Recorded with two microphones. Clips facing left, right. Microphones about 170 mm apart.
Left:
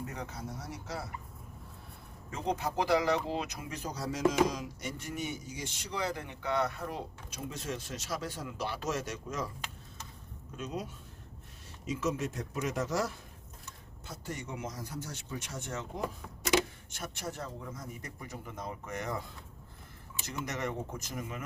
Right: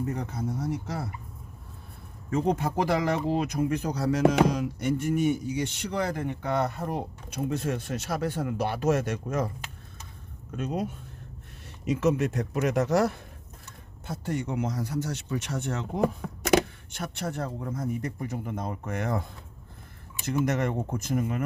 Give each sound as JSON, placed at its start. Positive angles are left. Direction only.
{"t": 0.1, "sound": "speech", "side_deg": -50}
{"t": 2.3, "sound": "speech", "side_deg": -50}
{"t": 10.6, "sound": "speech", "side_deg": -55}
{"t": 11.9, "sound": "speech", "side_deg": -65}
{"t": 20.2, "sound": "speech", "side_deg": -55}